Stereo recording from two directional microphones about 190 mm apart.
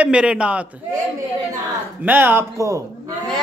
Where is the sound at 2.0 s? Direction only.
10° right (ahead or behind).